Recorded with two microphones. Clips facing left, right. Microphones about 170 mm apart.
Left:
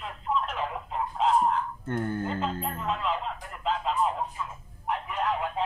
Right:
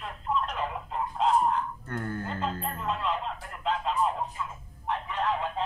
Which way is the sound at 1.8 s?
20° left (ahead or behind).